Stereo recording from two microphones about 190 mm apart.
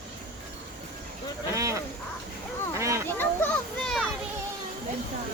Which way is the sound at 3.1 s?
10° left (ahead or behind).